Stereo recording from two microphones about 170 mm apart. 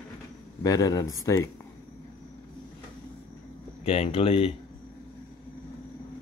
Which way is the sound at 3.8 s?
35° left (ahead or behind).